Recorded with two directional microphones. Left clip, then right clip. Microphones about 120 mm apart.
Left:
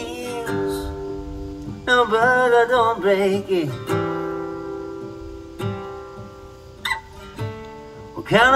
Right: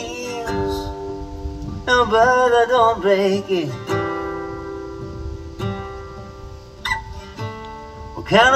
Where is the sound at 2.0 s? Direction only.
15° right (ahead or behind).